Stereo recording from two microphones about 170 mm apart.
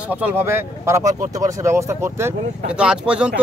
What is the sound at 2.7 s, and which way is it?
Speech, 5° right (ahead or behind).